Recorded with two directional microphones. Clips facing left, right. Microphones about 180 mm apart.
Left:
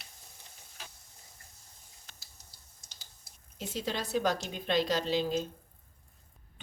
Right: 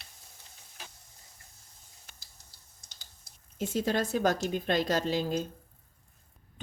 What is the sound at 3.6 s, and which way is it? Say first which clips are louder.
A woman's voice: right 6 dB; 45° right (ahead or behind).